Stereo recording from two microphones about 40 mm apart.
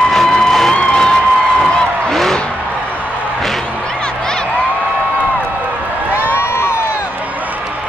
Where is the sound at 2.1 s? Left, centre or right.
Centre.